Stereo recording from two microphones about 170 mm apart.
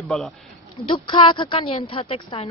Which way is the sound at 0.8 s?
30° left (ahead or behind).